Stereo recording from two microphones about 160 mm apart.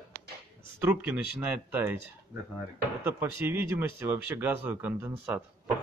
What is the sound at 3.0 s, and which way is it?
Speech, 15° right (ahead or behind).